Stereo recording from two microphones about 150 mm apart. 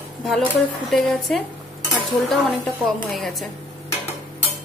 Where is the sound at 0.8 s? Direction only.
Centre (ahead or behind).